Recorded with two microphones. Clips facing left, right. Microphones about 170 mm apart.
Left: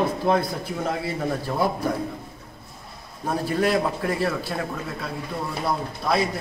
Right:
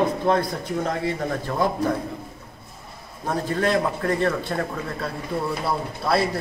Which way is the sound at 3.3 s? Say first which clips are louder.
Even; 10° left (ahead or behind).